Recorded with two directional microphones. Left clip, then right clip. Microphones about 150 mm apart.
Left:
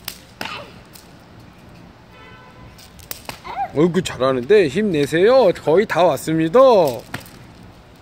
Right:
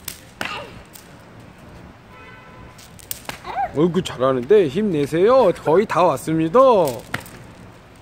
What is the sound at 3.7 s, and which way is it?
Speech, 10° left (ahead or behind).